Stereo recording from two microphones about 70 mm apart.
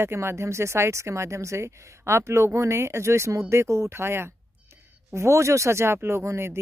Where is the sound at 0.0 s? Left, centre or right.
Right.